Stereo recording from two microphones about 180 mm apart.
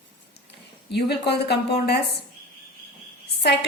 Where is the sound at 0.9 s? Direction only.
65° left (ahead or behind).